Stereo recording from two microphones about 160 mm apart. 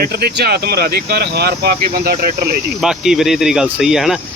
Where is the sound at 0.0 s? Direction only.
80° right.